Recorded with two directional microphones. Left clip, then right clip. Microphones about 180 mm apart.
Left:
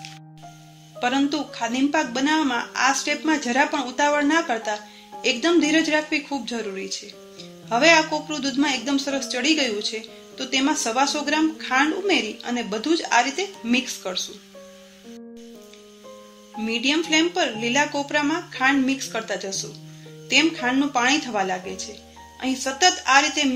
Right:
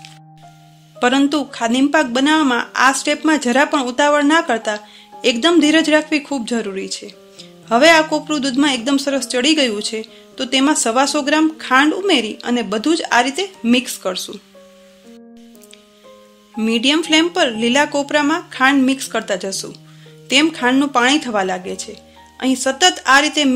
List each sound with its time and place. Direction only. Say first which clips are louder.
0.9 s speech: right 7 dB; 60° right (ahead or behind)
16.5 s speech: right 6 dB; 60° right (ahead or behind)